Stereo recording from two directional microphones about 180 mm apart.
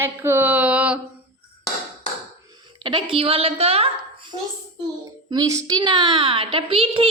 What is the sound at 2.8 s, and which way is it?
A woman's voice, 25° right (ahead or behind).